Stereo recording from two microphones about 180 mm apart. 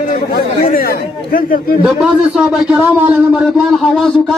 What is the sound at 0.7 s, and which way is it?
Speech, 55° left (ahead or behind).